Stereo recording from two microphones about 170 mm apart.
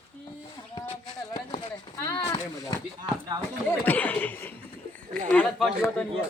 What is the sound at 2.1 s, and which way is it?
Speech, 20° left (ahead or behind).